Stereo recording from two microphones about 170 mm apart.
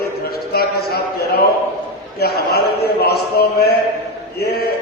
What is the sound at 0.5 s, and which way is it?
A man's voice, 65° left (ahead or behind).